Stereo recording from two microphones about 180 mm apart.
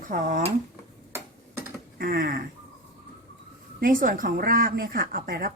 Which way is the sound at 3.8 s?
50° right (ahead or behind).